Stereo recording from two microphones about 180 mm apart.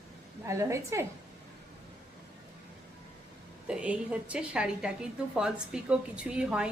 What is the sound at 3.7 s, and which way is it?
A woman's voice, 5° right (ahead or behind).